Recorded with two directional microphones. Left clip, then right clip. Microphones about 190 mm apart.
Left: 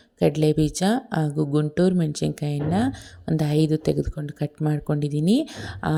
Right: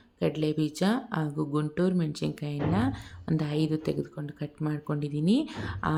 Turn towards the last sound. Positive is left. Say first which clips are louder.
# left 3 dB
turn(degrees=30)  # may be behind; listen again after turning